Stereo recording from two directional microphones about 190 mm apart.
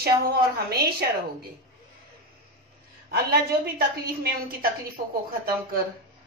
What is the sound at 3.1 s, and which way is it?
A woman's voice, 55° right (ahead or behind).